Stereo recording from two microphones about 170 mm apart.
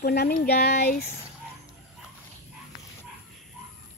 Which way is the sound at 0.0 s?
70° left (ahead or behind).